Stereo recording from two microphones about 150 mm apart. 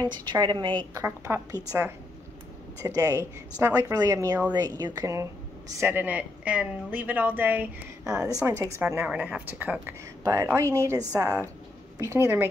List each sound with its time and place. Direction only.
0.0 s speech: 30° right (ahead or behind)
1.0 s speech: 20° right (ahead or behind)
10.2 s speech: 25° right (ahead or behind)